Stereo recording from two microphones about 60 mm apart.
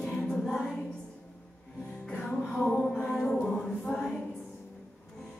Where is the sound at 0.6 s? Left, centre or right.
Centre.